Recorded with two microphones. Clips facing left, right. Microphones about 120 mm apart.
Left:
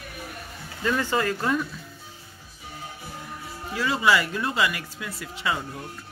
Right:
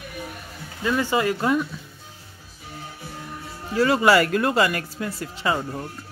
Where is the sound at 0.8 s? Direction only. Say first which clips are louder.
Right 3 dB; 10° right (ahead or behind).